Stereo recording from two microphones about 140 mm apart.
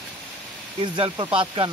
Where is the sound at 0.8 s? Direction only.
35° right (ahead or behind).